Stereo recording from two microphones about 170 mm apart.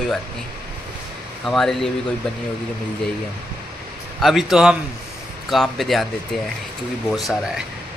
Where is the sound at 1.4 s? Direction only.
Centre (ahead or behind).